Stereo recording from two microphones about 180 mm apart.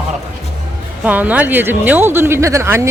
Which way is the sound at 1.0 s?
10° right (ahead or behind).